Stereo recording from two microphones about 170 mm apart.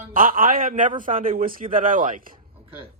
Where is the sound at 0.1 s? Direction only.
55° right (ahead or behind).